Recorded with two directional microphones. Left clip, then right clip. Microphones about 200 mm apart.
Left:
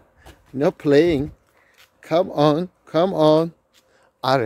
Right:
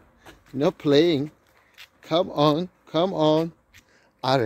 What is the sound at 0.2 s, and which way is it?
Speech, 15° left (ahead or behind).